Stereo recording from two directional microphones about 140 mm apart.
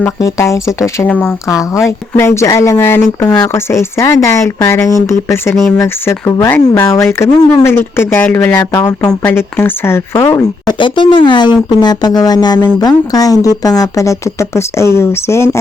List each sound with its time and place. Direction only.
0.2 s speech: 25° left (ahead or behind)
1.0 s speech: 10° left (ahead or behind)
1.5 s speech: 25° left (ahead or behind)
5.5 s speech: centre (ahead or behind)
5.8 s speech: 20° left (ahead or behind)
10.7 s speech: 35° left (ahead or behind); by 15.4 s 20° left (ahead or behind)